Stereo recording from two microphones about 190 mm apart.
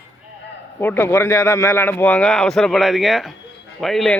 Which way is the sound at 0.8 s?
10° left (ahead or behind).